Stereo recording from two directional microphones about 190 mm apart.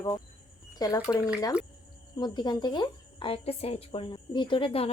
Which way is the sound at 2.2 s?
25° left (ahead or behind).